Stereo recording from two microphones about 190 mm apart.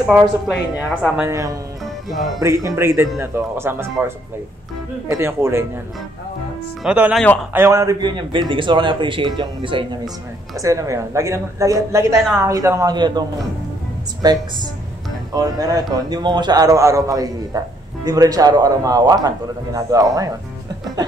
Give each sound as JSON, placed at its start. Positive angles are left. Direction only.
{"t": 0.1, "sound": "speech", "side_deg": 0}
{"t": 5.1, "sound": "speech", "side_deg": -15}
{"t": 6.8, "sound": "a man's voice", "side_deg": -5}
{"t": 14.2, "sound": "a man's voice", "side_deg": -20}